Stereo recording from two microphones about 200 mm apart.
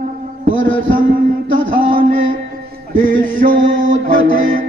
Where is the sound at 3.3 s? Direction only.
40° right (ahead or behind).